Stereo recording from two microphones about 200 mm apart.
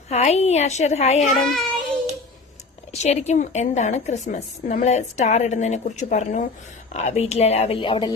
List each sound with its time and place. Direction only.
0.1 s a woman's voice: 35° left (ahead or behind)
1.2 s child singing: centre (ahead or behind)
2.9 s a woman's voice: 35° left (ahead or behind)